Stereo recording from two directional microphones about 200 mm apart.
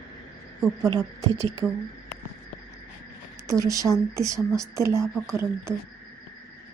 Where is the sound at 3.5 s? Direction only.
15° right (ahead or behind).